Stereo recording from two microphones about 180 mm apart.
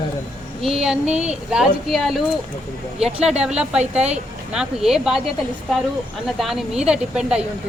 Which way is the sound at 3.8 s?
35° right (ahead or behind).